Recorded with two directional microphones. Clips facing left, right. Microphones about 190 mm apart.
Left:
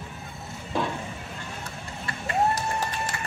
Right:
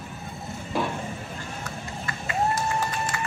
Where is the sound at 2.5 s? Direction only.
40° left (ahead or behind).